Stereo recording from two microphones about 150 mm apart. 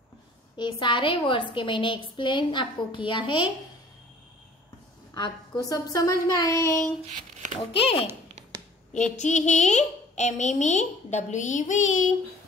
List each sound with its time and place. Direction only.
0.6 s a woman's voice: 30° left (ahead or behind)
5.1 s a woman's voice: 25° left (ahead or behind)
7.1 s a sound: 50° right (ahead or behind)
7.8 s a woman's voice: 40° left (ahead or behind)
8.4 s a sound: 50° right (ahead or behind)
9.1 s a woman's voice: 50° left (ahead or behind)